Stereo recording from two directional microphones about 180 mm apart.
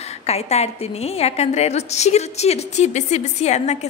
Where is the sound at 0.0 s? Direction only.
35° left (ahead or behind).